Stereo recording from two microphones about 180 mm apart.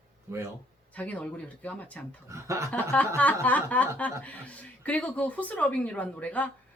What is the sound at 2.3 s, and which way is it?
Speech, 15° right (ahead or behind).